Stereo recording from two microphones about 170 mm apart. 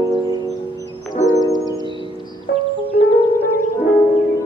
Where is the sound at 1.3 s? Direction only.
20° left (ahead or behind).